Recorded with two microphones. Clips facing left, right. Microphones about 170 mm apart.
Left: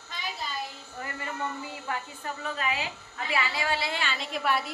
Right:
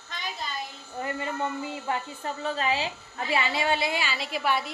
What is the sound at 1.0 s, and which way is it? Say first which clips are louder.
A woman's voice: right 5 dB; 25° right (ahead or behind).